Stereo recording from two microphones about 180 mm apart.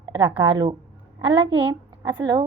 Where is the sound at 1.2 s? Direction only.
90° right.